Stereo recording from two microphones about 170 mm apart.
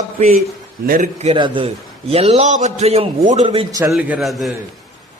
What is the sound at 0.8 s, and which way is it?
Speech, 55° right (ahead or behind).